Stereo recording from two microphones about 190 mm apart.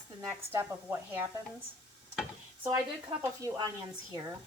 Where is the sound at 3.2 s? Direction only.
15° right (ahead or behind).